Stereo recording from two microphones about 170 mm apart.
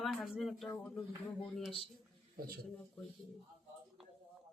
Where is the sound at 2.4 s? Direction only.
65° right (ahead or behind).